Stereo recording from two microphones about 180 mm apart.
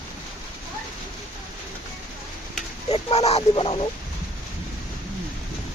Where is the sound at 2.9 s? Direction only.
35° left (ahead or behind).